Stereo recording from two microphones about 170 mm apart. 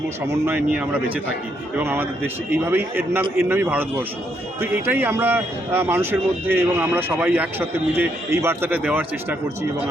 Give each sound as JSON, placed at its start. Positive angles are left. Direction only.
{"t": 0.4, "sound": "speech", "side_deg": -10}